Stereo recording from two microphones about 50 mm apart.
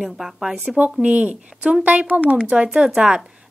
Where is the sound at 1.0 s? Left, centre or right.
Right.